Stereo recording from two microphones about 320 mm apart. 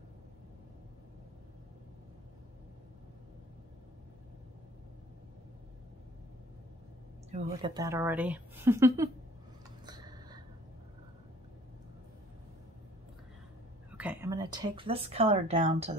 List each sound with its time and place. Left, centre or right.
7.2 s a woman's voice: centre
9.8 s a sound: centre
13.9 s speech: centre